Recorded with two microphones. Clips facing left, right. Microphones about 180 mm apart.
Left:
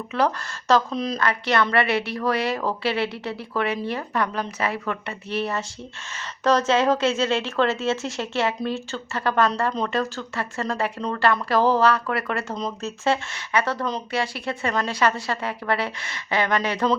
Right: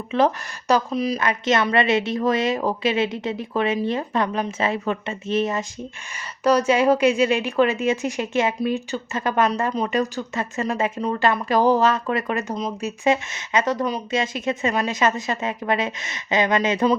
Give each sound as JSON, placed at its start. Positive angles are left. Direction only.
{"t": 0.1, "sound": "a woman's voice", "side_deg": -20}
{"t": 0.9, "sound": "speech", "side_deg": -5}
{"t": 1.2, "sound": "a woman's voice", "side_deg": -20}
{"t": 12.5, "sound": "speech", "side_deg": -5}
{"t": 13.1, "sound": "a woman's voice", "side_deg": -20}